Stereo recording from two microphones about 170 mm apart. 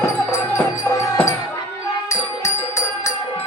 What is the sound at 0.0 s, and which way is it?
Music, 15° left (ahead or behind).